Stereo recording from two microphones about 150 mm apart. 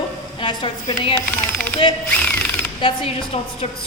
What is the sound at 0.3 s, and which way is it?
Speech, 35° left (ahead or behind).